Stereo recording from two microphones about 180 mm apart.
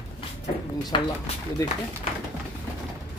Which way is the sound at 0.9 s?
25° left (ahead or behind).